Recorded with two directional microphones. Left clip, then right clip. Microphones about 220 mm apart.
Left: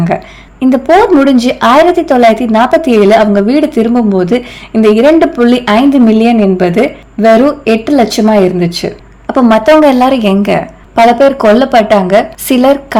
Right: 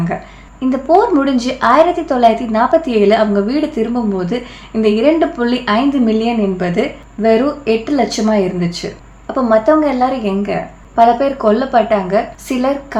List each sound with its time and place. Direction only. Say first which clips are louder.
0.6 s speech: left 5 dB; 35° left (ahead or behind)